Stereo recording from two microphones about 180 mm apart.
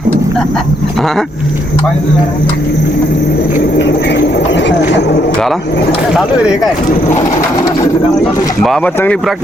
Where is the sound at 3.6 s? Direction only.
70° left (ahead or behind).